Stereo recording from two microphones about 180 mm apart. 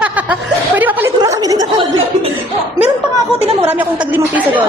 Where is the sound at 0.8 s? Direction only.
10° right (ahead or behind).